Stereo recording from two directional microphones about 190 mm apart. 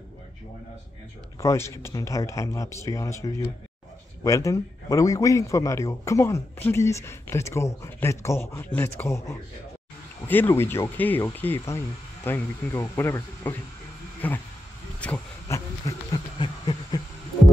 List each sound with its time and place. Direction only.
1.4 s a man's voice: 15° left (ahead or behind)
15.4 s a man's voice: 15° left (ahead or behind)
16.3 s a sound: 25° left (ahead or behind)